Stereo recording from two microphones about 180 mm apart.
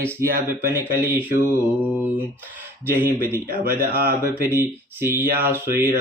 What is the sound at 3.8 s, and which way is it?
Speech, 55° right (ahead or behind).